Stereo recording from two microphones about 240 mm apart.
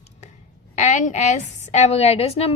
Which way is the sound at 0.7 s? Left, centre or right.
Left.